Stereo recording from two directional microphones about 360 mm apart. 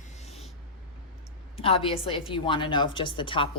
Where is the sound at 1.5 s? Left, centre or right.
Centre.